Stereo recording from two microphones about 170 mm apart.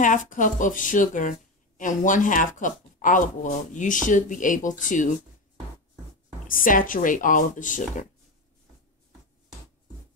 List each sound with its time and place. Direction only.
0.0 s speech: 50° left (ahead or behind)
6.4 s speech: 55° left (ahead or behind)